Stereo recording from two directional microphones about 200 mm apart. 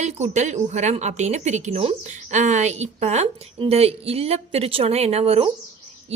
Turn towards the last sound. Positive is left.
turn(degrees=-30)  # may be behind; listen again after turning